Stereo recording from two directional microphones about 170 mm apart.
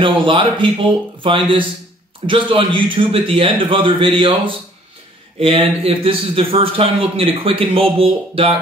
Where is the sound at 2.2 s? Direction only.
30° right (ahead or behind).